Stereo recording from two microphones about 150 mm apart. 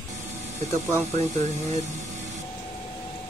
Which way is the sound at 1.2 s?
50° right (ahead or behind).